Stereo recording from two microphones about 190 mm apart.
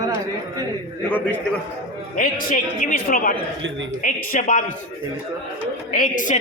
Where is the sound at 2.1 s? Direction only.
45° left (ahead or behind).